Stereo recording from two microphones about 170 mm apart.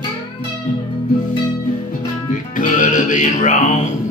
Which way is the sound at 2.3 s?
50° left (ahead or behind).